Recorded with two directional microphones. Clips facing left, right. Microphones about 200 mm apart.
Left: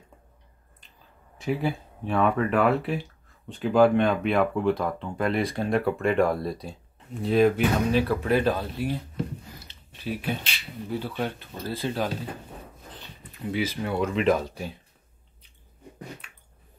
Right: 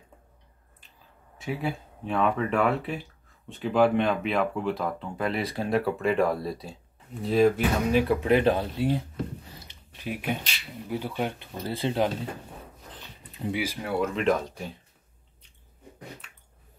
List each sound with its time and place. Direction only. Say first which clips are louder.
1.4 s speech: left 4 dB; centre (ahead or behind)
7.9 s speech: right 1 dB; 15° right (ahead or behind)
9.7 s a sound: left 2 dB; 15° right (ahead or behind)
10.9 s speech: even; 15° right (ahead or behind)
13.3 s speech: left 1 dB; 15° right (ahead or behind); by 14.6 s 5° left (ahead or behind)